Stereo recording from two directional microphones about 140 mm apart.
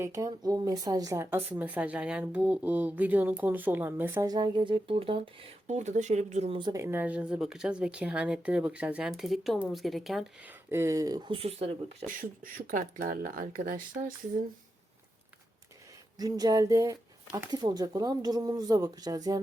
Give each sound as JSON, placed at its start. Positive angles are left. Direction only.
{"t": 0.0, "sound": "a woman's voice", "side_deg": -20}
{"t": 4.3, "sound": "speech", "side_deg": -30}
{"t": 5.6, "sound": "speech", "side_deg": -55}
{"t": 6.7, "sound": "a woman's voice", "side_deg": -15}
{"t": 10.7, "sound": "speech", "side_deg": -20}
{"t": 11.3, "sound": "speech", "side_deg": -45}
{"t": 12.0, "sound": "speech", "side_deg": -80}
{"t": 16.1, "sound": "speech", "side_deg": -25}